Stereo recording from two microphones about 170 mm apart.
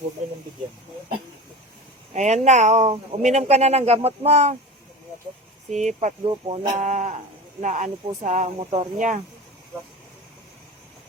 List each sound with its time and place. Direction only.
2.1 s speech: 45° right (ahead or behind)
5.7 s speech: 45° right (ahead or behind)
6.2 s speech: 30° right (ahead or behind)
6.6 s speech: 45° right (ahead or behind)
8.5 s speech: 35° right (ahead or behind)
9.0 s speech: 50° right (ahead or behind)